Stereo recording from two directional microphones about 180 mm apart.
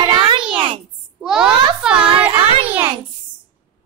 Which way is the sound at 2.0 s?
30° right (ahead or behind).